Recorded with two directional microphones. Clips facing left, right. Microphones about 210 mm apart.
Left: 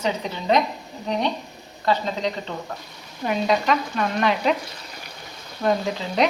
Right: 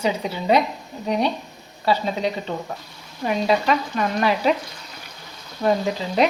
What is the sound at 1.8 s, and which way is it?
Speech, 10° right (ahead or behind).